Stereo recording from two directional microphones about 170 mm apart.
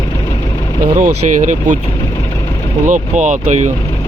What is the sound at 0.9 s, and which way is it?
Speech, 50° right (ahead or behind).